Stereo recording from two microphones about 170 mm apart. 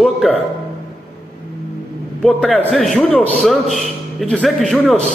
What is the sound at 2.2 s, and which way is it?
A man's voice, 5° left (ahead or behind).